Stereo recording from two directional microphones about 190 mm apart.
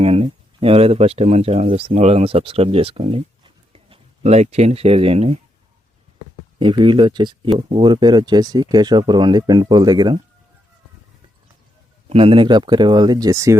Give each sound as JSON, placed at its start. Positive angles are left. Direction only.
{"t": 0.0, "sound": "speech", "side_deg": -30}
{"t": 6.6, "sound": "speech", "side_deg": -25}
{"t": 12.0, "sound": "speech", "side_deg": -30}